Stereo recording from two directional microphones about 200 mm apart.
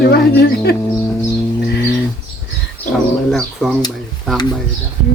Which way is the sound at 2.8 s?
10° left (ahead or behind).